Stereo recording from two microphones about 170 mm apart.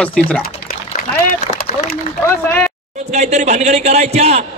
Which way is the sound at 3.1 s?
40° right (ahead or behind).